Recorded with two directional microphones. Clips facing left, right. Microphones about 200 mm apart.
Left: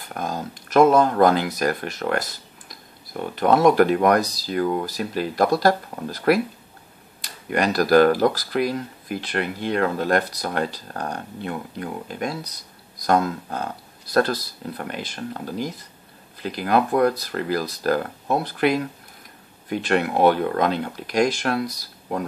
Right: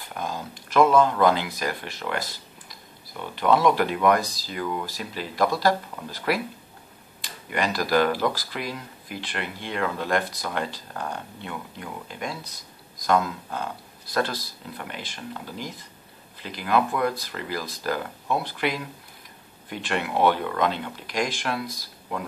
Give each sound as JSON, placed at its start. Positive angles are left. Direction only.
{"t": 0.1, "sound": "speech", "side_deg": 45}